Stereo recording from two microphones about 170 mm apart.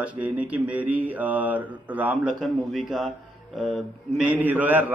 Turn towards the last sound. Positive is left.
turn(degrees=-10)  # may be behind; listen again after turning